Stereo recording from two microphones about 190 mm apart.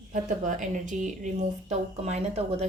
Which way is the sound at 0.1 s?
40° right (ahead or behind).